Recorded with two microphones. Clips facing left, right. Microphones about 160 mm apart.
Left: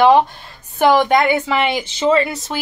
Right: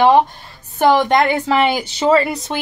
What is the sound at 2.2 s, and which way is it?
Speech, 5° left (ahead or behind).